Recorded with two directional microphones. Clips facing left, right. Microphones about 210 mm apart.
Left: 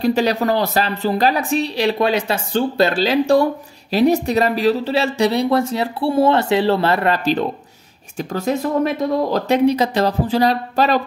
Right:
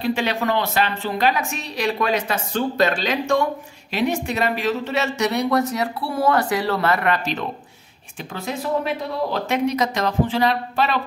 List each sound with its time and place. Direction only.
0.0 s speech: 40° left (ahead or behind)